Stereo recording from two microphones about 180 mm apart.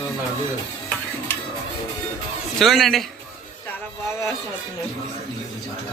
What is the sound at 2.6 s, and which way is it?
Speech, centre (ahead or behind).